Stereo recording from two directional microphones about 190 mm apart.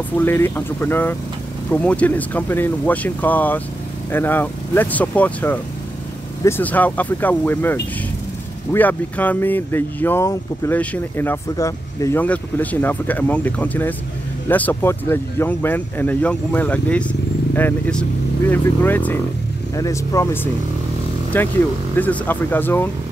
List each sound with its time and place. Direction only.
0.2 s speech: 10° left (ahead or behind)
21.3 s speech: 10° left (ahead or behind)